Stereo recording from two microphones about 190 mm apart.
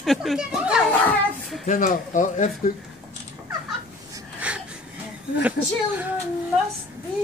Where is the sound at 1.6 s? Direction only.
45° left (ahead or behind).